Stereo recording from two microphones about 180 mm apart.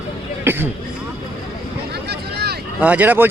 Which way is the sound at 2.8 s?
10° right (ahead or behind).